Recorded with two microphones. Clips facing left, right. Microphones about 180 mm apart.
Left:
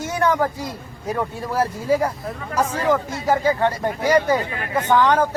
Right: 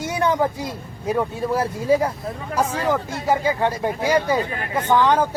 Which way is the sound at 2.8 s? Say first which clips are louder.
Left 2 dB; 10° right (ahead or behind).